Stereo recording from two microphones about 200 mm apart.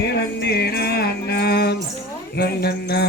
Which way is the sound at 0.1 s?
55° left (ahead or behind).